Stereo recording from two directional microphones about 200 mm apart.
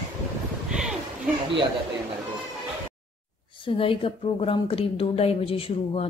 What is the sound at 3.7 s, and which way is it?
Speech, 25° left (ahead or behind).